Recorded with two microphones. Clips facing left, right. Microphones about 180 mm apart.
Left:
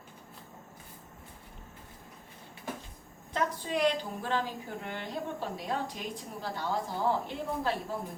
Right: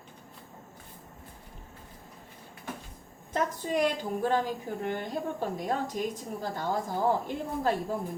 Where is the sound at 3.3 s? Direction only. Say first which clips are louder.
Right 2 dB; 45° right (ahead or behind).